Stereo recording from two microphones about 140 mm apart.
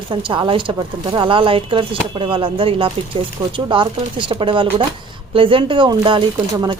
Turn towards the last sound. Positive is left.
turn(degrees=-35)  # may be behind; listen again after turning